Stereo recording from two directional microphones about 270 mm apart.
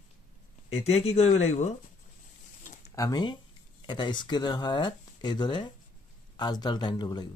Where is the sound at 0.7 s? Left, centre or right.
Left.